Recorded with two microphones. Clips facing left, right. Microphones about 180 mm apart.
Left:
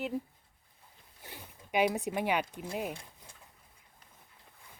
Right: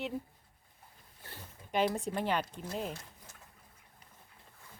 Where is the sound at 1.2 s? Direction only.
15° left (ahead or behind).